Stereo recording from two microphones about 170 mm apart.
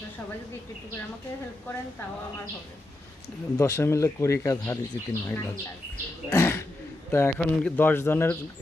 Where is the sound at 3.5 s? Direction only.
15° left (ahead or behind).